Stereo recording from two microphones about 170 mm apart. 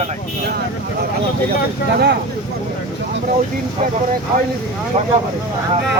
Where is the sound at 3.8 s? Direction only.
40° right (ahead or behind).